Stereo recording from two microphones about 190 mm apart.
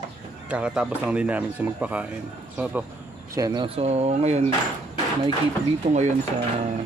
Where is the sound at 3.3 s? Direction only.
20° right (ahead or behind); by 4.4 s 35° right (ahead or behind).